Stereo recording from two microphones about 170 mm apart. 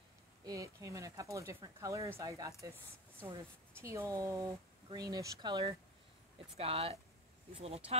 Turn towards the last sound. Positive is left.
turn(degrees=-35)  # may be behind; listen again after turning